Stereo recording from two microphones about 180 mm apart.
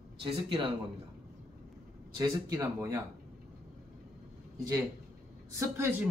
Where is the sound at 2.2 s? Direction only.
20° right (ahead or behind).